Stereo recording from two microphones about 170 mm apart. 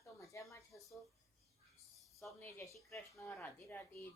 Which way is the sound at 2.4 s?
15° left (ahead or behind).